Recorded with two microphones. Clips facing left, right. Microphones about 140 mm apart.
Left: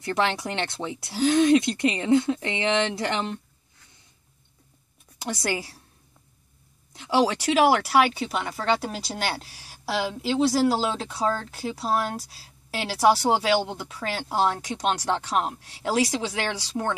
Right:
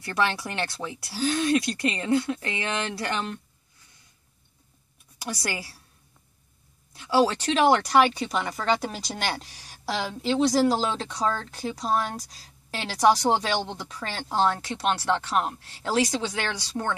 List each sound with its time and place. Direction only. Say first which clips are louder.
0.0 s speech: left 2 dB; 20° left (ahead or behind)
5.2 s speech: left 4 dB; 20° left (ahead or behind)
6.9 s speech: even; 20° left (ahead or behind)